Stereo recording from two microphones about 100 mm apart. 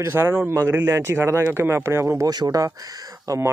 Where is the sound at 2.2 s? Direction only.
40° right (ahead or behind).